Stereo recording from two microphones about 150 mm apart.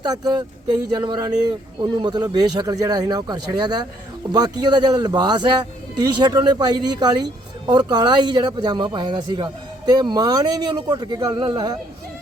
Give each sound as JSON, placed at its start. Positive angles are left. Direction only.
{"t": 0.0, "sound": "speech", "side_deg": -30}